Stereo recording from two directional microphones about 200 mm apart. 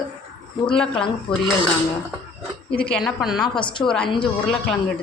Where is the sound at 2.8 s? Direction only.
Centre (ahead or behind).